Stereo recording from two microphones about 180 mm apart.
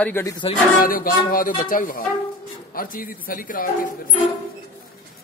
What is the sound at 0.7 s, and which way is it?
Speech, 50° left (ahead or behind).